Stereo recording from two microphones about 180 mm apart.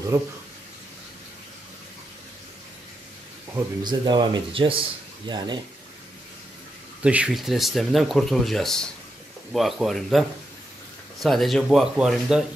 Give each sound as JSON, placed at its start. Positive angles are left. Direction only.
{"t": 0.1, "sound": "speech", "side_deg": -15}
{"t": 3.5, "sound": "speech", "side_deg": -25}
{"t": 7.0, "sound": "speech", "side_deg": -5}